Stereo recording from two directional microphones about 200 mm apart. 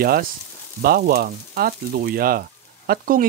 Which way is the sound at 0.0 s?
50° right (ahead or behind).